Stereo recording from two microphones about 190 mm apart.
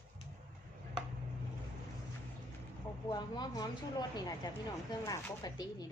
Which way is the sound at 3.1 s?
20° left (ahead or behind).